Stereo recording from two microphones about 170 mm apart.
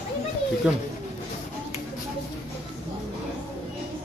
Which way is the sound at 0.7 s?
5° right (ahead or behind).